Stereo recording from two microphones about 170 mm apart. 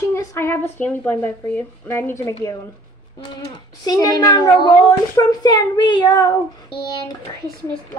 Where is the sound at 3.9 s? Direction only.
25° left (ahead or behind).